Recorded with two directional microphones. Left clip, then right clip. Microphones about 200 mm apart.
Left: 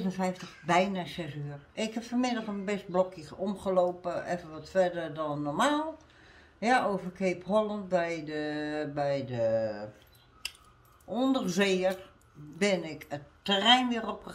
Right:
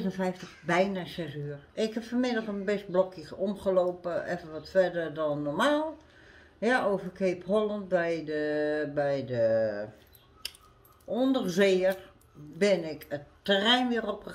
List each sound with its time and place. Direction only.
0.0 s speech: 20° left (ahead or behind)
11.1 s speech: 15° left (ahead or behind)